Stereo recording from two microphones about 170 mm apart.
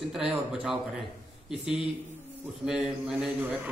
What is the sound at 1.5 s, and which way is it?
Speech, 5° right (ahead or behind).